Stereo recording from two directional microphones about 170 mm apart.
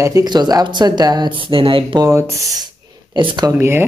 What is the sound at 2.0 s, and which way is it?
Speech, 20° right (ahead or behind).